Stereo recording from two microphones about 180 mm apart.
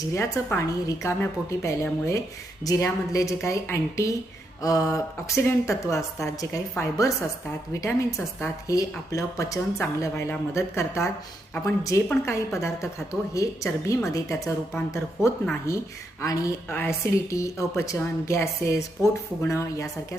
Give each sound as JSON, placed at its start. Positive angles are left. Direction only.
{"t": 0.1, "sound": "speech", "side_deg": 15}
{"t": 4.6, "sound": "a sound", "side_deg": 20}
{"t": 4.9, "sound": "speech", "side_deg": 15}
{"t": 15.7, "sound": "speech", "side_deg": 15}